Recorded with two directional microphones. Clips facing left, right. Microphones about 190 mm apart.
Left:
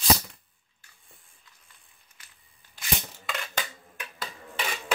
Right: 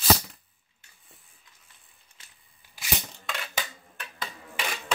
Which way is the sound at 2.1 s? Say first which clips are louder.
Even; 25° right (ahead or behind).